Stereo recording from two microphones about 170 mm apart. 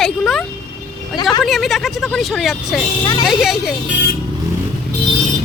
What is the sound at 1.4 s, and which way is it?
Speech, centre (ahead or behind).